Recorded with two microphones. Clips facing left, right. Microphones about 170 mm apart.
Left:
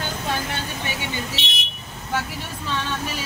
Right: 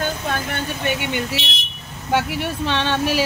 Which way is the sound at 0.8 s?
65° right (ahead or behind).